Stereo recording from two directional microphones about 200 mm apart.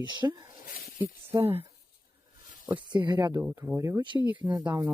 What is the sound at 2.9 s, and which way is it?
Speech, 20° right (ahead or behind).